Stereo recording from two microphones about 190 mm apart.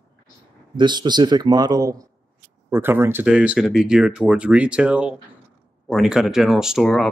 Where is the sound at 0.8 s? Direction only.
25° right (ahead or behind).